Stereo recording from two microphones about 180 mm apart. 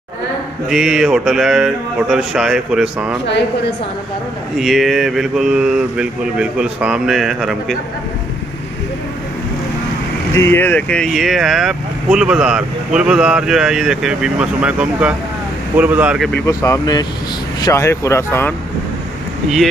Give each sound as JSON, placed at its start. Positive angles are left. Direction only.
{"t": 0.7, "sound": "speech", "side_deg": 0}
{"t": 4.6, "sound": "speech", "side_deg": 0}
{"t": 10.3, "sound": "speech", "side_deg": 15}
{"t": 16.4, "sound": "speech", "side_deg": 15}